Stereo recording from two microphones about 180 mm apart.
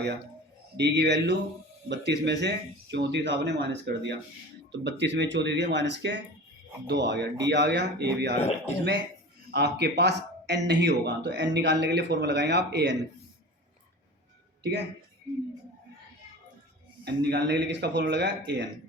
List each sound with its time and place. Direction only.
0.8 s speech: 70° right (ahead or behind)
8.4 s speech: 35° left (ahead or behind)
9.5 s speech: 70° right (ahead or behind)
17.0 s speech: 65° right (ahead or behind)